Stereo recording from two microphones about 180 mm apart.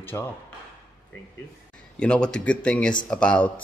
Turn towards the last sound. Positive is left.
turn(degrees=5)  # may be behind; listen again after turning